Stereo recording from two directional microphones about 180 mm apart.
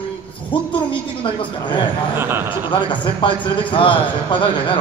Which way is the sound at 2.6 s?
25° left (ahead or behind).